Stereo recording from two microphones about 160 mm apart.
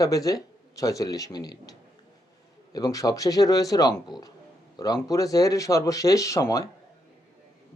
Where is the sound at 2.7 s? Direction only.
20° left (ahead or behind).